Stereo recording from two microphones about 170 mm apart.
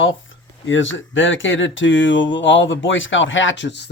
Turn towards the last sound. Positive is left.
turn(degrees=90)